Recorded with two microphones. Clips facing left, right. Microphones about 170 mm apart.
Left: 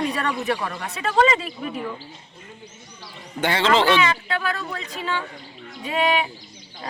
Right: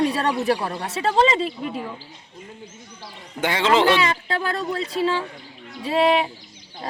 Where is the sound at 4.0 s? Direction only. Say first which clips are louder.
Even; 35° right (ahead or behind).